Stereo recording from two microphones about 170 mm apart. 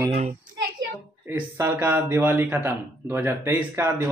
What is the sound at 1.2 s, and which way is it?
Speech, 15° right (ahead or behind).